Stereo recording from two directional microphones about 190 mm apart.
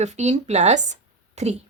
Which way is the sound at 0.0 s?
35° right (ahead or behind).